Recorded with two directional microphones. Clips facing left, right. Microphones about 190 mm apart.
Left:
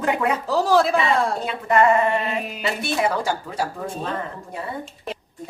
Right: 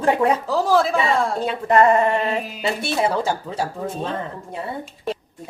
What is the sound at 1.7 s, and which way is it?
Speech, 35° right (ahead or behind).